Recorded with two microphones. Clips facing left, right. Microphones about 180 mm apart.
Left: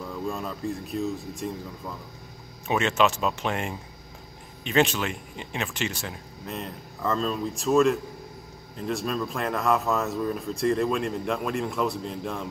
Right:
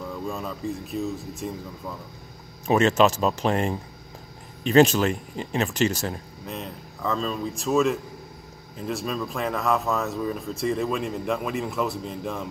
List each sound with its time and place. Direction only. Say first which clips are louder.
0.0 s speech: even; centre (ahead or behind)
2.6 s speech: right 4 dB; 40° right (ahead or behind)
6.4 s speech: left 2 dB; centre (ahead or behind)